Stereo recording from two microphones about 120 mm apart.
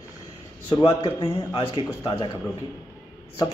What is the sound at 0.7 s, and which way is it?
A man's voice, 50° left (ahead or behind).